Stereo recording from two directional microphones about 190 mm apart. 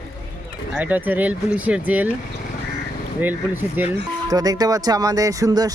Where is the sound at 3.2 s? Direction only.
10° right (ahead or behind).